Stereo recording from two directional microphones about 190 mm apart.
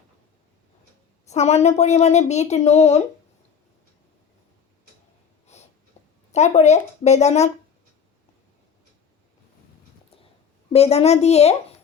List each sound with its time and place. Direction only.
1.3 s speech: 35° left (ahead or behind)
6.3 s speech: 35° left (ahead or behind)
10.7 s speech: 35° left (ahead or behind)